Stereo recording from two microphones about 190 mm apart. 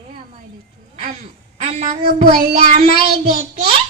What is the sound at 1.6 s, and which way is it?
A child's voice, 40° right (ahead or behind).